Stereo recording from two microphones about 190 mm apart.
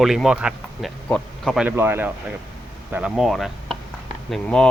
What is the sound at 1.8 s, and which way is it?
Speech, 10° right (ahead or behind).